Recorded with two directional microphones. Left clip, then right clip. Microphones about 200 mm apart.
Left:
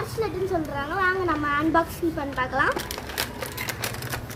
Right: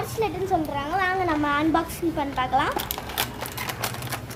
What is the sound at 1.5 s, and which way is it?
Speech, 20° right (ahead or behind).